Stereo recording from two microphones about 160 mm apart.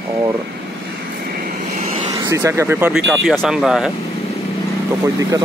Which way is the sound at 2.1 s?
20° right (ahead or behind).